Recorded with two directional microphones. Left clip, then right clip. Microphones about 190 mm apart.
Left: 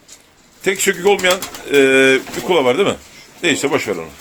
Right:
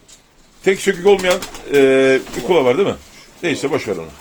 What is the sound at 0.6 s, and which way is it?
Speech, centre (ahead or behind).